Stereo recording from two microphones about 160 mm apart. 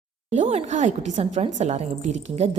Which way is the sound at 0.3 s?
45° right (ahead or behind).